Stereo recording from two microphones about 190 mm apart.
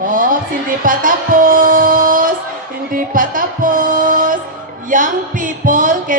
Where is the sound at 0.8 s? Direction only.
45° right (ahead or behind).